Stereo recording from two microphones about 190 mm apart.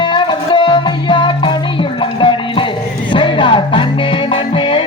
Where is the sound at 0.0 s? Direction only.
25° left (ahead or behind).